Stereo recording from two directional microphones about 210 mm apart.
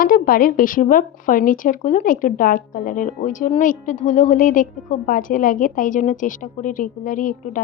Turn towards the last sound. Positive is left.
turn(degrees=40)  # may be behind; listen again after turning